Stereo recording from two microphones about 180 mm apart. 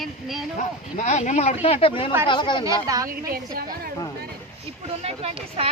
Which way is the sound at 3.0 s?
55° right (ahead or behind).